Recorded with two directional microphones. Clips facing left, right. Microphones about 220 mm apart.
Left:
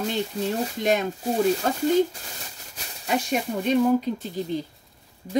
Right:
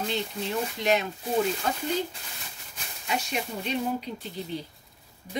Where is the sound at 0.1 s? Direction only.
45° left (ahead or behind).